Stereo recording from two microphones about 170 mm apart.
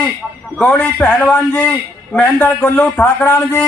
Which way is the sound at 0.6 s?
10° left (ahead or behind).